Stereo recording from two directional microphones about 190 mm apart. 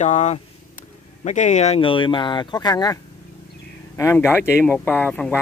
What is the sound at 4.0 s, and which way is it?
Speech, 15° left (ahead or behind).